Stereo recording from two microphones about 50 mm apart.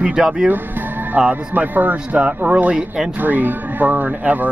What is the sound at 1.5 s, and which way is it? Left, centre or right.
Speech, right.